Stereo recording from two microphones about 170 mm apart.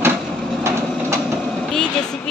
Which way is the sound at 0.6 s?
15° right (ahead or behind).